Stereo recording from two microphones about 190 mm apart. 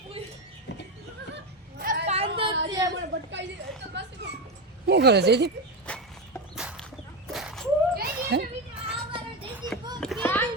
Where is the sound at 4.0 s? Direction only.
65° right (ahead or behind).